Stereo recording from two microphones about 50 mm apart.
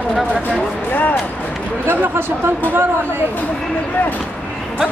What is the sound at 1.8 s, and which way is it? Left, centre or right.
Speech, right.